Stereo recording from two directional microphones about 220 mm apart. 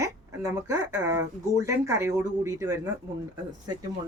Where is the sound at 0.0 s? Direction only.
15° right (ahead or behind).